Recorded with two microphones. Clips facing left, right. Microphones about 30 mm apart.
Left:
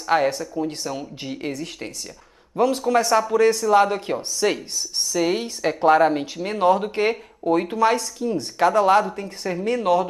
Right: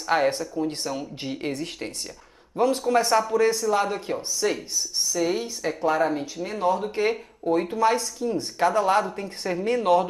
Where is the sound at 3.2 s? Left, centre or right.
Left.